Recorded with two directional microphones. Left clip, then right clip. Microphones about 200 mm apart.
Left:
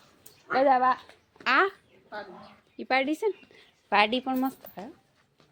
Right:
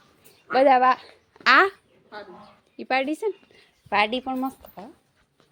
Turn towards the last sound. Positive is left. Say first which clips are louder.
# right 1 dB
turn(degrees=5)  # may be behind; listen again after turning